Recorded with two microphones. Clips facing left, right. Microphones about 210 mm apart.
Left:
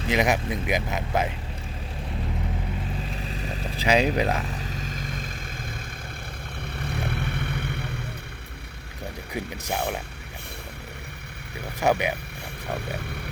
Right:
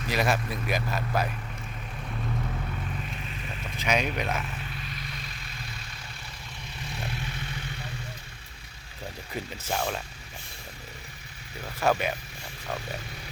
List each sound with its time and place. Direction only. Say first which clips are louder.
0.0 s speech: left 4 dB; 20° left (ahead or behind)
3.0 s vehicle: left 5 dB; 35° left (ahead or behind)
6.7 s vehicle: left 6 dB; 60° left (ahead or behind)
9.3 s speech: left 3 dB; 15° left (ahead or behind)
11.8 s speech: left 3 dB; 15° left (ahead or behind)
12.6 s a sound: left 4 dB; 60° left (ahead or behind)